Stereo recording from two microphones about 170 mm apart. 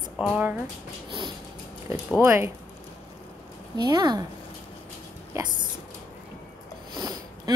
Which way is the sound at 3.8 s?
25° right (ahead or behind).